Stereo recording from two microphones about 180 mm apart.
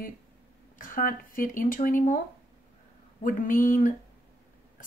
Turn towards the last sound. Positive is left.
turn(degrees=50)  # may be behind; listen again after turning